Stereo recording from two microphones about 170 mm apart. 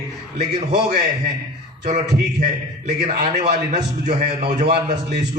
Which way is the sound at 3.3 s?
45° right (ahead or behind).